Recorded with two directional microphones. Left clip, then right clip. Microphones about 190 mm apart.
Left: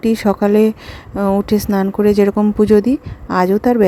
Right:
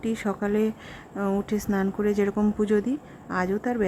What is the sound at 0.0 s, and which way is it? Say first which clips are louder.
A woman's voice: left 13 dB; 25° left (ahead or behind).